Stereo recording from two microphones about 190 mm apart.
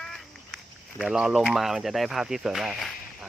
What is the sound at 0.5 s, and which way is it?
Speech, centre (ahead or behind).